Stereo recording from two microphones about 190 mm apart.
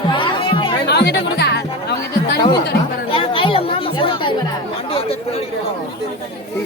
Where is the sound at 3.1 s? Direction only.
30° left (ahead or behind).